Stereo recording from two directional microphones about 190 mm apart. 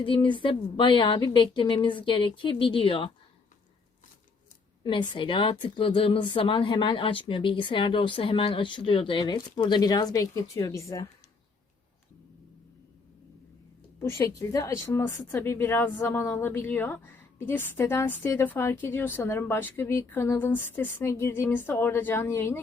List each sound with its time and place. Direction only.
0.0 s speech: 25° left (ahead or behind)
4.8 s speech: 25° left (ahead or behind)
14.3 s a woman's voice: 15° left (ahead or behind)